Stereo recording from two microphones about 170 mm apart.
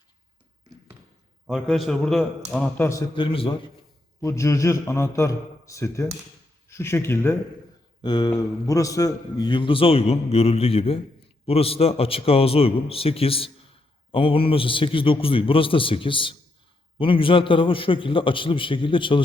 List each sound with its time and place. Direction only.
1.5 s a man's voice: centre (ahead or behind)
3.2 s a man's voice: 30° left (ahead or behind)
4.2 s a man's voice: 15° left (ahead or behind)
8.0 s a man's voice: 25° left (ahead or behind)